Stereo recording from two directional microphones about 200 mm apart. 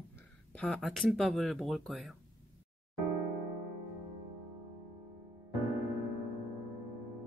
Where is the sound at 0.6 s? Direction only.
Centre (ahead or behind).